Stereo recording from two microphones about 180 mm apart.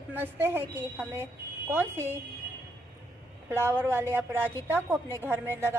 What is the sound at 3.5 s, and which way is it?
A woman's voice, 10° right (ahead or behind).